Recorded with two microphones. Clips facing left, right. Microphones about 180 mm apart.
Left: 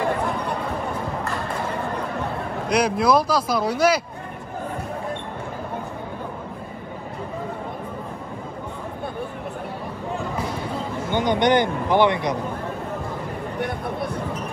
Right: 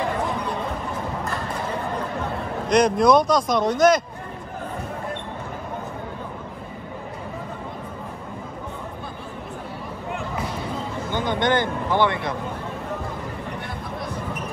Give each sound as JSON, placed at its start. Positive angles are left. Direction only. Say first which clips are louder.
{"t": 2.7, "sound": "speech", "louder": "right 3 dB", "side_deg": 5}
{"t": 11.1, "sound": "speech", "louder": "left 3 dB", "side_deg": 20}